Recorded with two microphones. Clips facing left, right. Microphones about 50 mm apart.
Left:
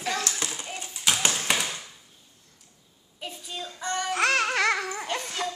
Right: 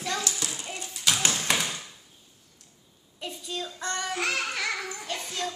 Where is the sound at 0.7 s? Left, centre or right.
Centre.